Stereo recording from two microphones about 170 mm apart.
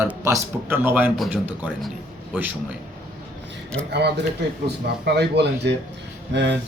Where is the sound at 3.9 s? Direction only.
75° right (ahead or behind).